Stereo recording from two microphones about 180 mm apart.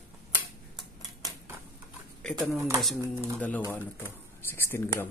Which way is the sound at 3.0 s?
15° right (ahead or behind).